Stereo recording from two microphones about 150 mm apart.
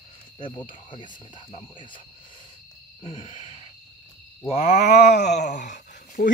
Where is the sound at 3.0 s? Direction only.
40° left (ahead or behind).